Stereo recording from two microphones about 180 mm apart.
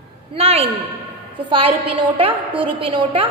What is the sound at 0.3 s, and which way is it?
A woman's voice, 35° right (ahead or behind).